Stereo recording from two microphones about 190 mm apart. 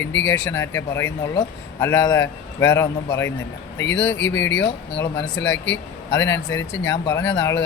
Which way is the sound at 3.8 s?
70° left (ahead or behind).